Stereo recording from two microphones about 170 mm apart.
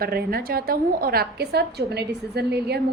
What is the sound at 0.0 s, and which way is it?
A woman's voice, 65° right (ahead or behind).